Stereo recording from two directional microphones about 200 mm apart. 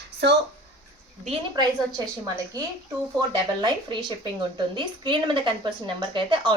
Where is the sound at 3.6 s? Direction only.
20° right (ahead or behind).